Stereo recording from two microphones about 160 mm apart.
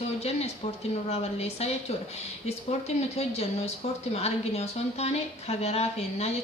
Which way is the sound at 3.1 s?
40° left (ahead or behind).